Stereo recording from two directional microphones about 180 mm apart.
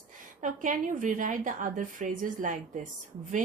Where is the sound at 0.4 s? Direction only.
45° right (ahead or behind).